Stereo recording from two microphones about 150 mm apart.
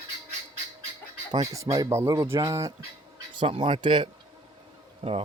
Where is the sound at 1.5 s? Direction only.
20° right (ahead or behind).